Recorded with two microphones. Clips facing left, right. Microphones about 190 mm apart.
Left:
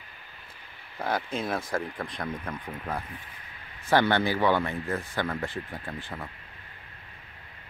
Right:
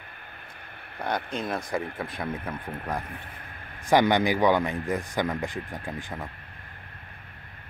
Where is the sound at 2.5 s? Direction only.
55° right (ahead or behind).